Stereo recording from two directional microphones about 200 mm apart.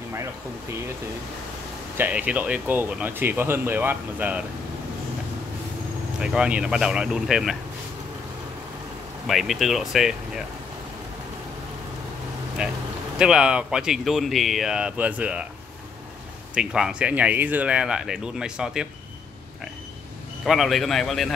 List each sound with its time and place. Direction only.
2.0 s speech: 5° right (ahead or behind)
6.1 s speech: 5° right (ahead or behind)
9.3 s speech: centre (ahead or behind)
12.6 s speech: 5° right (ahead or behind)
16.5 s speech: 5° right (ahead or behind)
20.4 s speech: centre (ahead or behind)